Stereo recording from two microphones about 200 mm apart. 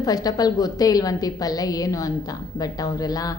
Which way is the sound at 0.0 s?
20° left (ahead or behind).